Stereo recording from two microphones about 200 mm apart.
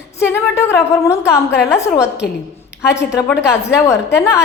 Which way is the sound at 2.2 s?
50° left (ahead or behind).